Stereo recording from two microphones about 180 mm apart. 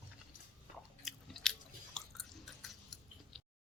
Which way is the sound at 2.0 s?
5° left (ahead or behind).